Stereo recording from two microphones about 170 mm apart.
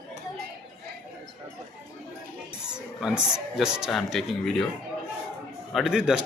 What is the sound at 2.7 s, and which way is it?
Music, 5° right (ahead or behind).